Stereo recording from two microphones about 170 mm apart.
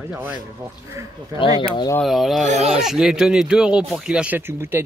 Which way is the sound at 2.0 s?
Centre (ahead or behind).